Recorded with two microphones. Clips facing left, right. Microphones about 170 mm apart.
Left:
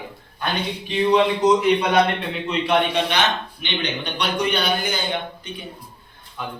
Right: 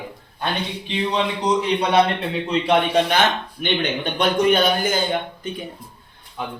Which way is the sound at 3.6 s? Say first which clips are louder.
Right 6 dB; 50° right (ahead or behind).